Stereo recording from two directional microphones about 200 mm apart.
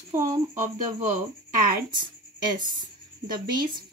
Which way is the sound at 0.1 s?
40° right (ahead or behind).